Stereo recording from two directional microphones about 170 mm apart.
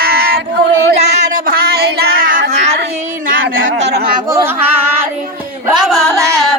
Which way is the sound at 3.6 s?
90° right.